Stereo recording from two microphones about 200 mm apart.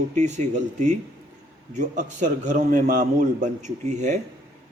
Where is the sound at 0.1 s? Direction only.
35° right (ahead or behind).